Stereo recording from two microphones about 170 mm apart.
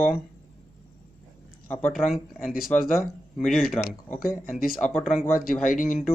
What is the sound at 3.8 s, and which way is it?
Speech, 5° left (ahead or behind).